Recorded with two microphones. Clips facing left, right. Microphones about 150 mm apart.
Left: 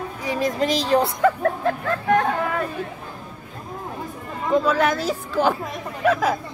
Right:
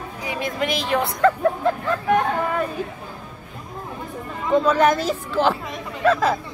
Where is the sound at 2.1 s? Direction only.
5° right (ahead or behind).